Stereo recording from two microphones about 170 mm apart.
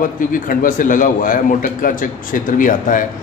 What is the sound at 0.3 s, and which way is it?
A man's voice, 55° left (ahead or behind).